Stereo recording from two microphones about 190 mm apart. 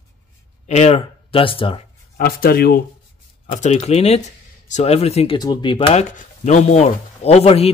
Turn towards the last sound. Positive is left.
turn(degrees=30)  # may be behind; listen again after turning